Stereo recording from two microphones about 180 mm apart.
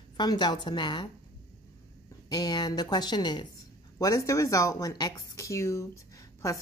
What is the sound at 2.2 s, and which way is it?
A woman's voice, 20° left (ahead or behind).